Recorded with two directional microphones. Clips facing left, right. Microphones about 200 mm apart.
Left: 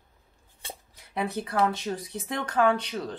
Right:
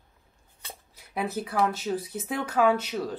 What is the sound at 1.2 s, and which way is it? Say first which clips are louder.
Speech: even; 5° right (ahead or behind).